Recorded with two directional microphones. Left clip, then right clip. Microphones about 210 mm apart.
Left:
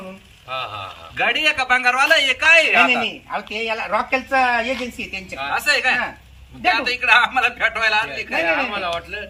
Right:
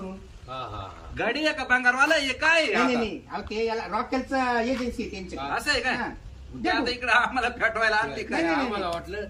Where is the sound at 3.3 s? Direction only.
25° left (ahead or behind).